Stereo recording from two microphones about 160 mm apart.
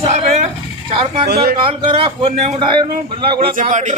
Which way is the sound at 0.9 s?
35° right (ahead or behind).